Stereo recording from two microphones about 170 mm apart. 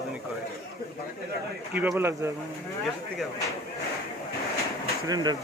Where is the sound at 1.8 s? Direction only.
10° right (ahead or behind).